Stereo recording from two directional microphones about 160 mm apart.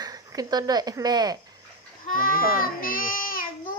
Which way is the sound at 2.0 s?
60° left (ahead or behind).